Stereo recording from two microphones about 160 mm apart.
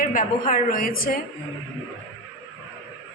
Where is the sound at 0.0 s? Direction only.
60° left (ahead or behind).